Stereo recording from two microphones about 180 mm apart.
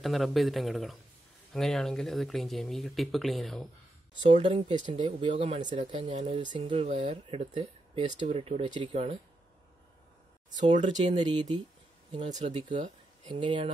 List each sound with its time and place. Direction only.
0.0 s speech: centre (ahead or behind)
4.2 s speech: 25° right (ahead or behind)
5.6 s speech: 45° right (ahead or behind)
6.4 s speech: 25° right (ahead or behind)
6.7 s speech: 40° right (ahead or behind)
10.8 s speech: 30° right (ahead or behind)
13.3 s speech: 25° right (ahead or behind)